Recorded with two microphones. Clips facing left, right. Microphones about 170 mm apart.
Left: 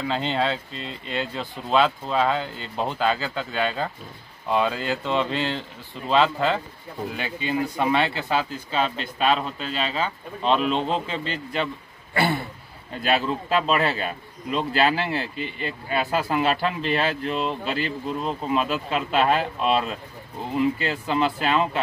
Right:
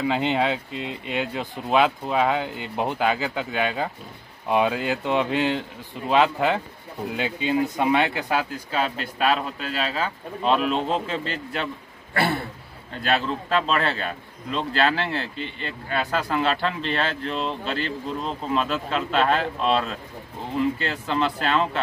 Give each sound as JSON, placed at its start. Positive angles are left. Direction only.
{"t": 0.0, "sound": "speech", "side_deg": -15}